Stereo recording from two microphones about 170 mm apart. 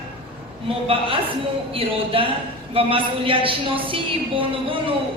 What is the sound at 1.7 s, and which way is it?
A woman's voice, 35° right (ahead or behind).